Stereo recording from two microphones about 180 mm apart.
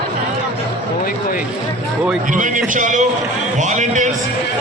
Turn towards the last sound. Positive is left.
turn(degrees=-45)  # may be behind; listen again after turning